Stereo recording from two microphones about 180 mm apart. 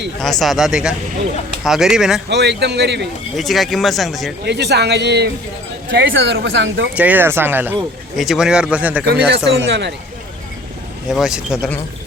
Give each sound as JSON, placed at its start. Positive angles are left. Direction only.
{"t": 0.2, "sound": "speech", "side_deg": 0}
{"t": 2.3, "sound": "a man's voice", "side_deg": -70}
{"t": 3.3, "sound": "speech", "side_deg": 0}
{"t": 4.4, "sound": "a man's voice", "side_deg": -70}
{"t": 5.9, "sound": "speech", "side_deg": -85}
{"t": 6.9, "sound": "speech", "side_deg": -10}
{"t": 9.6, "sound": "a man's voice", "side_deg": -75}
{"t": 11.1, "sound": "speech", "side_deg": -5}